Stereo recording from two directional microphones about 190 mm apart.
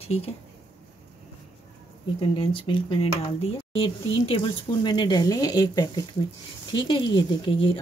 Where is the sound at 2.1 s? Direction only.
25° left (ahead or behind).